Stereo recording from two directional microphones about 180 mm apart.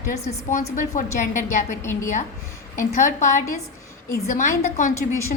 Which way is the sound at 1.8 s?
15° left (ahead or behind).